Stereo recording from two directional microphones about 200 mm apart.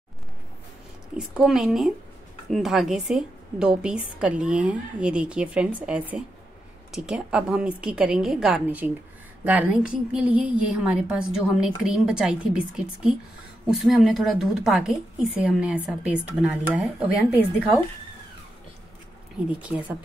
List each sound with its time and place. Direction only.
1.1 s a woman's voice: 5° right (ahead or behind)
19.5 s speech: 5° right (ahead or behind)